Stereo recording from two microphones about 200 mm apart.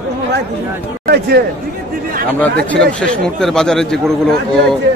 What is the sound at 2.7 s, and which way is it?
A man's voice, 5° left (ahead or behind).